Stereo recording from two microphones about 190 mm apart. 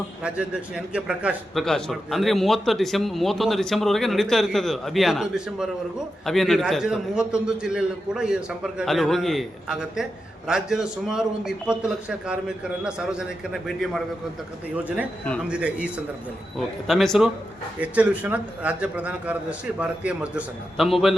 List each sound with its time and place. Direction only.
0.2 s a man's voice: 5° right (ahead or behind)
15.4 s a man's voice: 5° right (ahead or behind)